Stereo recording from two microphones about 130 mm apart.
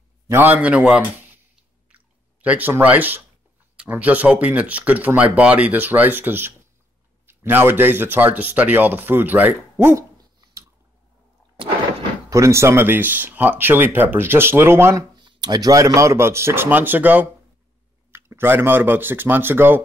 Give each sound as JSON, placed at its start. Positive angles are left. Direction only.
{"t": 0.3, "sound": "speech", "side_deg": -15}
{"t": 1.9, "sound": "chewing", "side_deg": -10}
{"t": 3.7, "sound": "speech", "side_deg": -10}
{"t": 12.3, "sound": "speech", "side_deg": -25}
{"t": 15.1, "sound": "speech", "side_deg": -35}